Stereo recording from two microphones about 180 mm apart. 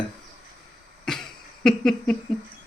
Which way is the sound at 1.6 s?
5° left (ahead or behind).